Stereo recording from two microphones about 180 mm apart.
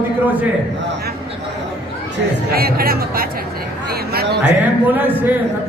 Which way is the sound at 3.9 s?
60° right (ahead or behind).